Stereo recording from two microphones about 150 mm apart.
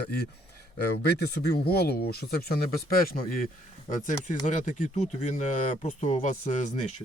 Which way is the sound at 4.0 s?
55° left (ahead or behind).